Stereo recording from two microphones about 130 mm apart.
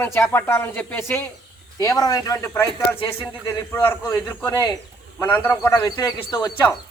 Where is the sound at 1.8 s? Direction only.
30° left (ahead or behind).